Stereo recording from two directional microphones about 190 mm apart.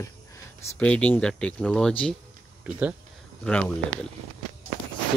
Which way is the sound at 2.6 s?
5° right (ahead or behind).